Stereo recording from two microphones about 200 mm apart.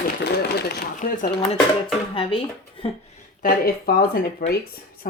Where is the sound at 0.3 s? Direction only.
55° left (ahead or behind).